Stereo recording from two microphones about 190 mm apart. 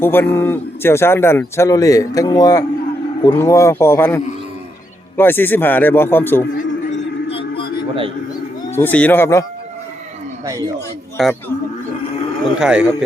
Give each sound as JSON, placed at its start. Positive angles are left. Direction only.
{"t": 0.0, "sound": "speech", "side_deg": 10}
{"t": 6.9, "sound": "music", "side_deg": 30}
{"t": 8.7, "sound": "speech", "side_deg": 10}
{"t": 10.4, "sound": "speech", "side_deg": -15}
{"t": 11.2, "sound": "speech", "side_deg": 0}
{"t": 12.5, "sound": "speech", "side_deg": -5}